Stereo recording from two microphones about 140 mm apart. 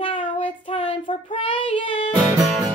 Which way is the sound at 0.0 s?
40° left (ahead or behind).